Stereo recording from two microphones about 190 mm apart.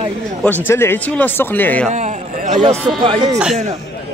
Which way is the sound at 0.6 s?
10° left (ahead or behind).